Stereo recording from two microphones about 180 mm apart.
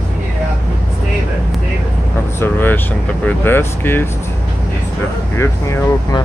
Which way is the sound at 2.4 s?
10° left (ahead or behind).